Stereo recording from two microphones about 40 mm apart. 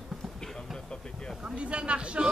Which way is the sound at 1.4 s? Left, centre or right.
Right.